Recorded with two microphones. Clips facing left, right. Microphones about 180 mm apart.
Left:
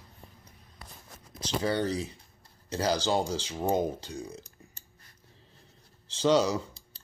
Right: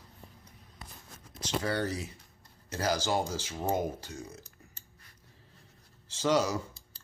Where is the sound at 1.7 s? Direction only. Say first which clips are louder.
Left 4 dB; 25° left (ahead or behind).